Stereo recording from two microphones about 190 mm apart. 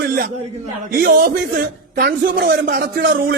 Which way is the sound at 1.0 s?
50° right (ahead or behind).